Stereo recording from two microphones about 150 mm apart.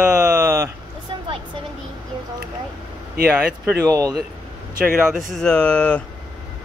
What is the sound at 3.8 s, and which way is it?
Speech, 25° right (ahead or behind).